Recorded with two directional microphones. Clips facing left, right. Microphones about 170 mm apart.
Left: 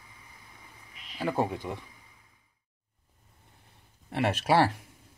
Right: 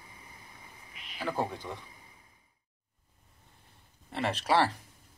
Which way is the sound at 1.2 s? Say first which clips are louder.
Left 4 dB; 15° left (ahead or behind).